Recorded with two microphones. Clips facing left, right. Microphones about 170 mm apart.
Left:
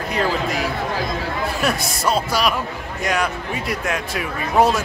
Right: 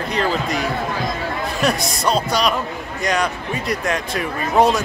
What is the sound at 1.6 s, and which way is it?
Speech, 5° left (ahead or behind).